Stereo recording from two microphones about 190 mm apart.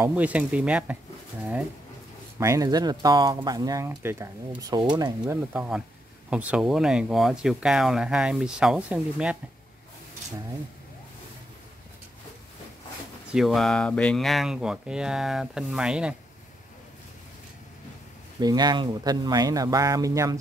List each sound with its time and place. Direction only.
0.0 s speech: 5° right (ahead or behind)
2.3 s speech: 15° right (ahead or behind)
5.5 s speech: 5° right (ahead or behind)
13.3 s speech: centre (ahead or behind)
18.4 s speech: 20° right (ahead or behind)